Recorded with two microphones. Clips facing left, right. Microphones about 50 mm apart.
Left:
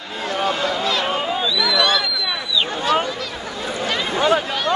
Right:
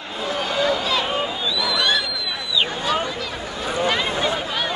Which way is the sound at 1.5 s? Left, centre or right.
Centre.